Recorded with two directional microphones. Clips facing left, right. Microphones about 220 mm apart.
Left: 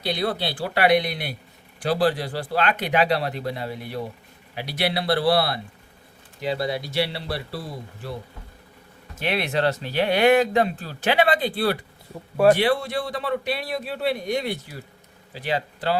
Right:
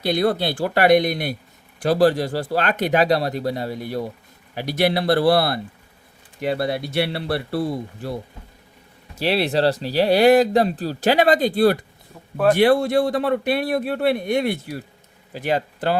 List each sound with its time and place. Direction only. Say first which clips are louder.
0.0 s speech: right 6 dB; 50° right (ahead or behind)
9.1 s speech: right 5 dB; 35° right (ahead or behind); by 16.0 s 50° right (ahead or behind)